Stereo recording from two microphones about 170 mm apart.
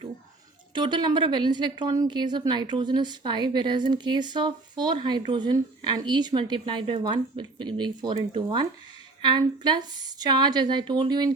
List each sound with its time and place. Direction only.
0.7 s a woman's voice: 25° right (ahead or behind)